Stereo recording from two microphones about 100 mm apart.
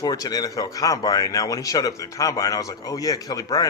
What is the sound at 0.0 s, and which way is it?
Speech, 40° left (ahead or behind).